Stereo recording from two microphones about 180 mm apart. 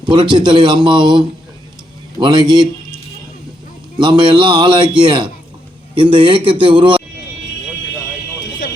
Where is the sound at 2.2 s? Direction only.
25° right (ahead or behind).